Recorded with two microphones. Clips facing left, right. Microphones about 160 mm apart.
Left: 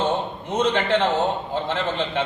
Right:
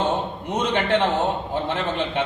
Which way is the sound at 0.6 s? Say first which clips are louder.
Left 1 dB; 15° right (ahead or behind).